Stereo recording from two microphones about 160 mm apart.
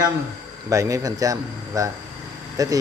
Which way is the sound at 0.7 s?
20° right (ahead or behind).